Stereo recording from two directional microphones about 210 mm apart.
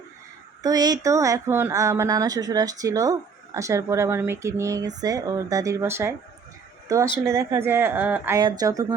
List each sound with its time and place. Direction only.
0.6 s speech: 20° right (ahead or behind)
8.4 s speech: 20° right (ahead or behind)